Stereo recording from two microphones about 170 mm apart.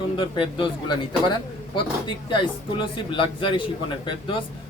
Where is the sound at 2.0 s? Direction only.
30° left (ahead or behind).